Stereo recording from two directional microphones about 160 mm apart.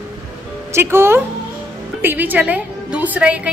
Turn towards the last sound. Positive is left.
turn(degrees=-5)  # may be behind; listen again after turning